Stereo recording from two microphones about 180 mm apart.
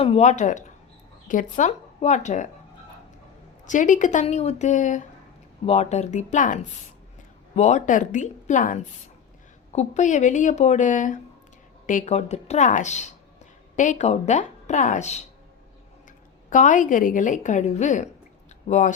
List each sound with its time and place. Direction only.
0.0 s a woman's voice: 35° left (ahead or behind)
3.7 s a woman's voice: 45° left (ahead or behind)
16.5 s a woman's voice: 45° left (ahead or behind)